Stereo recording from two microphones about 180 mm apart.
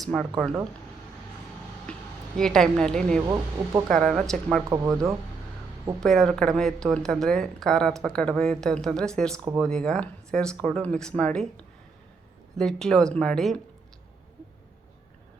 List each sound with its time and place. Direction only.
0.0 s speech: centre (ahead or behind)
1.9 s speech: 5° left (ahead or behind)
3.2 s speech: 20° right (ahead or behind)
3.8 s speech: centre (ahead or behind)
4.7 s speech: 20° right (ahead or behind)
6.0 s speech: centre (ahead or behind)